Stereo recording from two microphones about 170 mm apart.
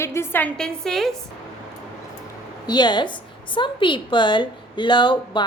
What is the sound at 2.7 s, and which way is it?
A woman's voice, 25° left (ahead or behind).